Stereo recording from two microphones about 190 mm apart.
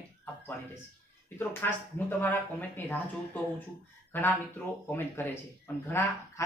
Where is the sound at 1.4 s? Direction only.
10° left (ahead or behind).